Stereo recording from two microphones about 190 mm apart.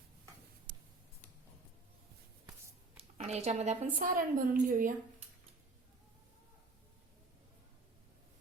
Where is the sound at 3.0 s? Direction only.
35° right (ahead or behind).